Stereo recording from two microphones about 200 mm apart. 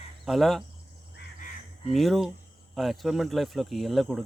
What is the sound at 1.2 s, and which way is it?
Crow, 60° left (ahead or behind).